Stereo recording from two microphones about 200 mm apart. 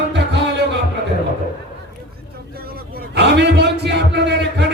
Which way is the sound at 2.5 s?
50° right (ahead or behind).